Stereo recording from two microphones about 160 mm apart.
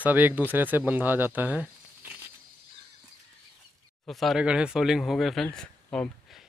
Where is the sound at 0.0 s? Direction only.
10° right (ahead or behind).